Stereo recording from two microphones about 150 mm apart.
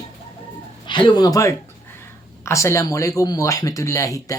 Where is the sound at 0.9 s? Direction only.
35° left (ahead or behind).